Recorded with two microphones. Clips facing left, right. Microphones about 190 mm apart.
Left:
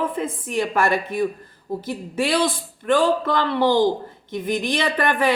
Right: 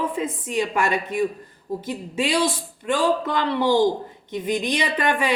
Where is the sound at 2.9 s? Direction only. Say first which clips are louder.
Left 3 dB; 15° right (ahead or behind).